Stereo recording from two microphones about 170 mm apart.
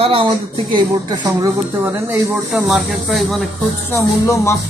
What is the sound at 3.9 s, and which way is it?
Speech, 15° left (ahead or behind).